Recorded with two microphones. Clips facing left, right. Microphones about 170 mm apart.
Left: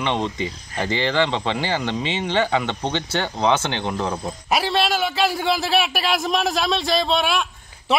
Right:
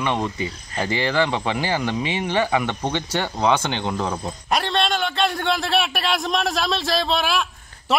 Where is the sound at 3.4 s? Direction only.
15° left (ahead or behind).